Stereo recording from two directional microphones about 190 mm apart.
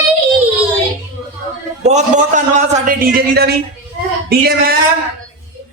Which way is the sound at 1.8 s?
40° right (ahead or behind).